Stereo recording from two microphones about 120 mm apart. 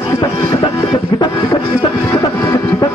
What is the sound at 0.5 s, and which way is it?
Music, 30° left (ahead or behind).